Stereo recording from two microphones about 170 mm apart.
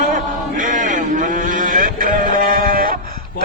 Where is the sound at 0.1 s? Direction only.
50° right (ahead or behind).